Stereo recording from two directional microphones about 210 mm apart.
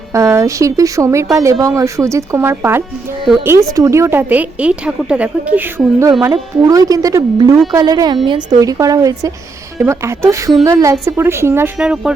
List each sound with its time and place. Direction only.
0.1 s a woman's voice: 15° right (ahead or behind)